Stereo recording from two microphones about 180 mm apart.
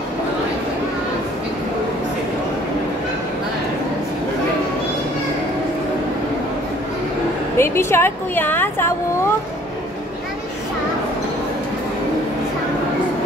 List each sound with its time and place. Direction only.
7.5 s a woman's voice: 15° left (ahead or behind)